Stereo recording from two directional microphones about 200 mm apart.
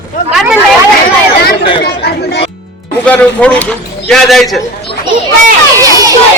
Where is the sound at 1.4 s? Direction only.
55° left (ahead or behind).